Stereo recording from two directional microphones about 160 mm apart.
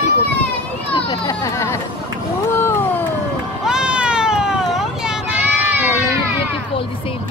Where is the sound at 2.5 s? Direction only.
15° left (ahead or behind).